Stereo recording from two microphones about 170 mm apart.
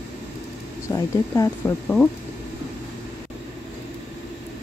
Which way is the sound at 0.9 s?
20° left (ahead or behind).